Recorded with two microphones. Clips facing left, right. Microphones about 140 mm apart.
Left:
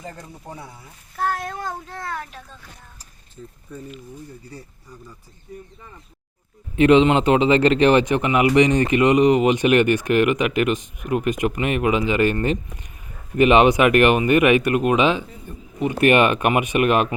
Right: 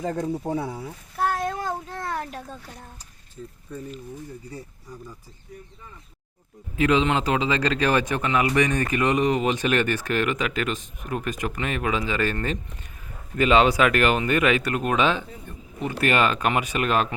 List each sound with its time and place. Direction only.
0.1 s speech: 75° right (ahead or behind)
1.2 s child singing: 20° right (ahead or behind)
1.6 s a child's voice: 15° right (ahead or behind)
2.1 s a child's voice: 40° right (ahead or behind)
6.7 s speech: 25° left (ahead or behind)